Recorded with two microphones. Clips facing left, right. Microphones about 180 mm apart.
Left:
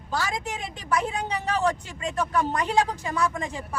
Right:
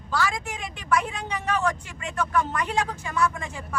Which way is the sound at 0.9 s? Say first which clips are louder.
Even; 35° left (ahead or behind).